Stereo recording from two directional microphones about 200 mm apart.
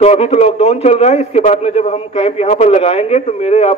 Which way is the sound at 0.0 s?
35° left (ahead or behind).